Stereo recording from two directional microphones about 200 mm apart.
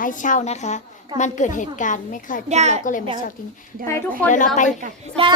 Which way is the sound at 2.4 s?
35° right (ahead or behind).